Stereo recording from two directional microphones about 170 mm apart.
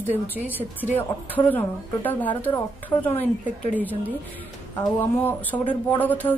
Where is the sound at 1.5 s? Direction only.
10° left (ahead or behind).